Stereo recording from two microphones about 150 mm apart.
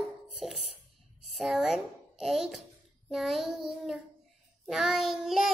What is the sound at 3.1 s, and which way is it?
Child singing, centre (ahead or behind).